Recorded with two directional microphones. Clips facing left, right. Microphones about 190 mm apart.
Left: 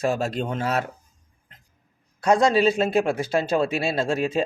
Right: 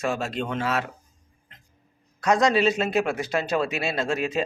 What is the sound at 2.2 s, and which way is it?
A man's voice, 30° left (ahead or behind).